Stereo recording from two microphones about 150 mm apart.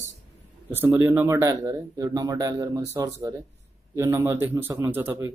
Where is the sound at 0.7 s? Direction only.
15° right (ahead or behind).